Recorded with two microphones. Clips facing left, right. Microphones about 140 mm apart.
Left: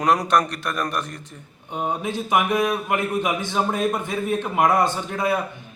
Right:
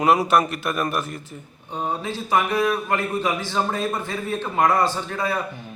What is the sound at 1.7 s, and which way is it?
A man's voice, 20° left (ahead or behind).